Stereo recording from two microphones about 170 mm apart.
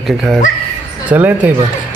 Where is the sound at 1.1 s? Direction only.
10° right (ahead or behind).